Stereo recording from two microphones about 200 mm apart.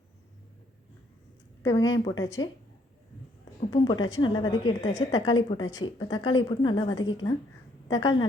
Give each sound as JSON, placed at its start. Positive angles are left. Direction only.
{"t": 1.6, "sound": "a woman's voice", "side_deg": 20}
{"t": 3.7, "sound": "a woman's voice", "side_deg": 25}